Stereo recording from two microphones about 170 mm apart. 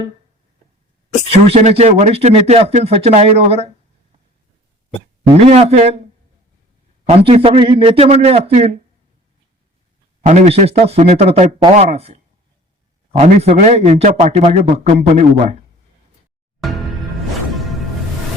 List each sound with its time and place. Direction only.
1.3 s a man's voice: 35° right (ahead or behind)
5.3 s a man's voice: 40° right (ahead or behind)
7.1 s a man's voice: 35° right (ahead or behind)
10.2 s a man's voice: 40° right (ahead or behind)